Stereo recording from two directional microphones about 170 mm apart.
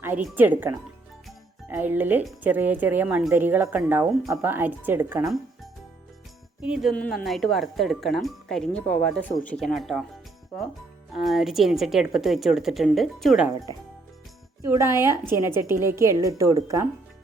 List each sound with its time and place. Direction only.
0.3 s a woman's voice: 10° right (ahead or behind)
6.6 s speech: 5° right (ahead or behind)
6.9 s speech: 10° left (ahead or behind)
11.1 s speech: centre (ahead or behind)
14.7 s a woman's voice: 15° right (ahead or behind)